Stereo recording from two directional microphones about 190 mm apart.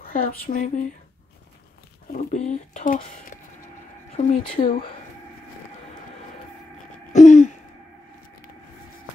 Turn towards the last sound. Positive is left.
turn(degrees=40)  # may be behind; listen again after turning